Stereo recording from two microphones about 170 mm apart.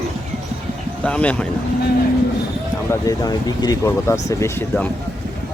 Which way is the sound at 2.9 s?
20° left (ahead or behind).